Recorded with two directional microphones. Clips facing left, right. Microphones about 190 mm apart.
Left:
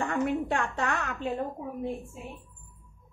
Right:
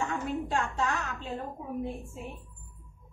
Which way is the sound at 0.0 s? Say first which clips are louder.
Left 4 dB; 60° left (ahead or behind).